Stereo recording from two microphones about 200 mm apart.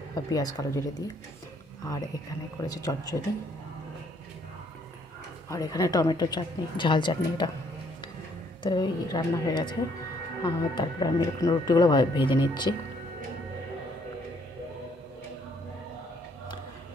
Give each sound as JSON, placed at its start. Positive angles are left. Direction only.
{"t": 0.1, "sound": "speech", "side_deg": 20}
{"t": 2.6, "sound": "speech", "side_deg": 15}
{"t": 5.5, "sound": "speech", "side_deg": 15}
{"t": 8.6, "sound": "speech", "side_deg": 20}